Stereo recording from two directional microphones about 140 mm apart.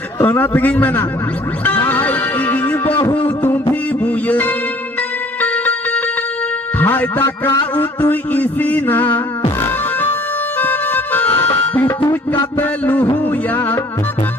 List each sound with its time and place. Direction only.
0.2 s a man's voice: 15° left (ahead or behind)
1.6 s music: 15° left (ahead or behind)
6.7 s a man's voice: 15° left (ahead or behind)
9.6 s music: 15° left (ahead or behind)
10.6 s harmonica: 10° left (ahead or behind)
11.7 s music: 10° left (ahead or behind)
12.5 s a man's voice: 10° left (ahead or behind)